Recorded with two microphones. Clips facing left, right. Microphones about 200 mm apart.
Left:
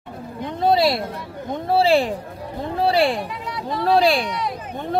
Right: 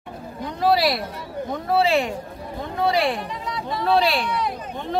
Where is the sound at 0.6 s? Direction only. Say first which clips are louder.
Left 2 dB; 25° left (ahead or behind).